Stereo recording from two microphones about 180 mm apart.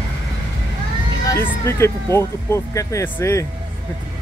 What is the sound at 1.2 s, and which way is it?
Speech, 15° left (ahead or behind).